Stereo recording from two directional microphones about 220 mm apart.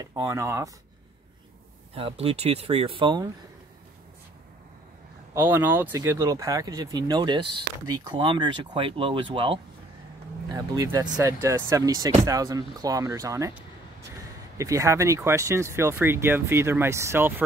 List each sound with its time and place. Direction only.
0.0 s speech: 15° right (ahead or behind)
2.0 s speech: 25° right (ahead or behind)
5.3 s speech: 10° right (ahead or behind)
14.6 s speech: 15° right (ahead or behind)